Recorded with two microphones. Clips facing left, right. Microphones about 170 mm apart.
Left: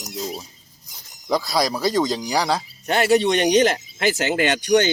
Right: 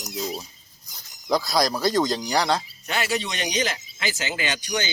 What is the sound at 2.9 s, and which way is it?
Speech, 55° left (ahead or behind).